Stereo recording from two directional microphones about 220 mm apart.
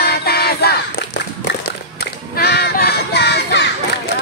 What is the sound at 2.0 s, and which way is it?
Music, 45° left (ahead or behind).